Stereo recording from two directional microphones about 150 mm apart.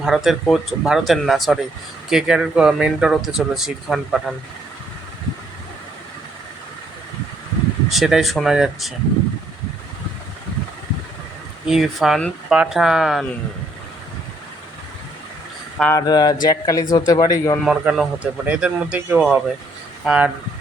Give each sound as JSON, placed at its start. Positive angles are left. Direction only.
{"t": 0.0, "sound": "speech", "side_deg": 0}
{"t": 7.9, "sound": "speech", "side_deg": 0}
{"t": 11.6, "sound": "speech", "side_deg": 0}
{"t": 15.9, "sound": "speech", "side_deg": 25}
{"t": 17.6, "sound": "a man's voice", "side_deg": 0}